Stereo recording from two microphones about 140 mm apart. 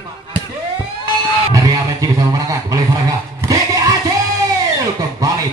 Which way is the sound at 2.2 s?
25° right (ahead or behind).